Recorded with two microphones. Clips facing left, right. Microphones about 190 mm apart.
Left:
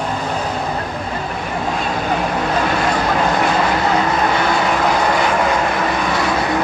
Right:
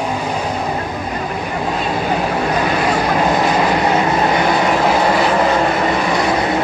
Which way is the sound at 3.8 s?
20° right (ahead or behind).